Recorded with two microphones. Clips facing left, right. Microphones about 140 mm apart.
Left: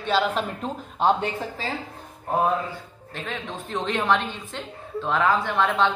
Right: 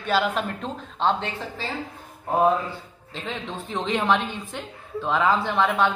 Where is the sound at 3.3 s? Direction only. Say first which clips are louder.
Right 1 dB; 15° right (ahead or behind).